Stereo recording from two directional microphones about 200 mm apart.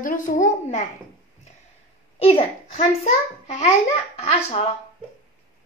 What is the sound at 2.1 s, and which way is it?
A child's voice, 30° left (ahead or behind).